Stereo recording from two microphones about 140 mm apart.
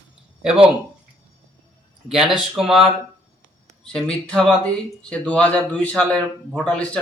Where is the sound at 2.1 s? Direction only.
5° right (ahead or behind).